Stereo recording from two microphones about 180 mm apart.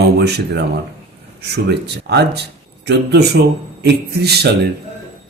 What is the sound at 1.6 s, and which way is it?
Speech, 65° right (ahead or behind).